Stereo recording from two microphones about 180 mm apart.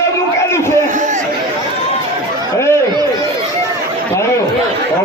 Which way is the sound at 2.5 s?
15° left (ahead or behind).